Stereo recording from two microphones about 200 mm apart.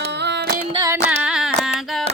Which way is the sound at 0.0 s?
55° right (ahead or behind).